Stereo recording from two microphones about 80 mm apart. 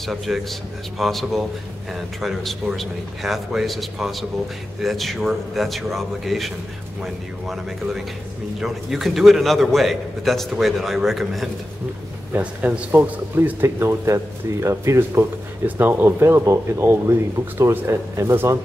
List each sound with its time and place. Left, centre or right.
0.0 s a man's voice: centre
12.3 s speech: centre; by 15.2 s right
15.6 s speech: right